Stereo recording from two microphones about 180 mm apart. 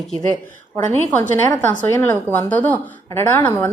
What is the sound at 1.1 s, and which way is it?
A woman's voice, 10° left (ahead or behind).